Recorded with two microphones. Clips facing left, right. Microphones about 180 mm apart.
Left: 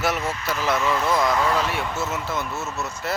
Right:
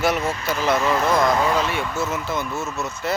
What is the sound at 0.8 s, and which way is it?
Speech, 40° right (ahead or behind).